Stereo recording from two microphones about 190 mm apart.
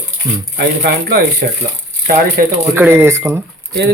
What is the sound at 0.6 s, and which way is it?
Speech, 60° right (ahead or behind).